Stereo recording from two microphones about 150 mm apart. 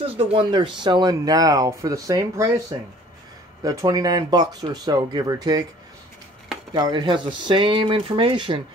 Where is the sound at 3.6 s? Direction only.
20° right (ahead or behind).